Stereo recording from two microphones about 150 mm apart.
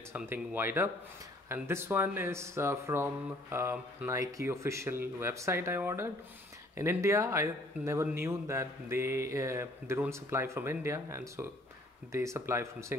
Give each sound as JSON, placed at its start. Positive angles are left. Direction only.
{"t": 0.1, "sound": "a man's voice", "side_deg": -15}